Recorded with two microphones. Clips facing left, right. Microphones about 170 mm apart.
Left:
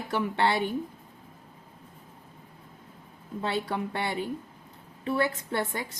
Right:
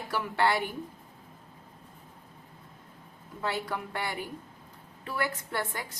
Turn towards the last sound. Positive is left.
turn(degrees=25)  # may be behind; listen again after turning